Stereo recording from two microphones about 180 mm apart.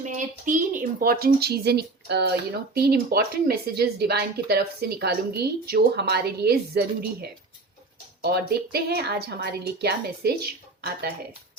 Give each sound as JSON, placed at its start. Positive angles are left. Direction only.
{"t": 0.0, "sound": "a woman's voice", "side_deg": -45}